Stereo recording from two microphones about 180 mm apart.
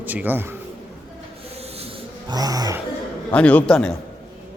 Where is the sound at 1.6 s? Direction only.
35° right (ahead or behind).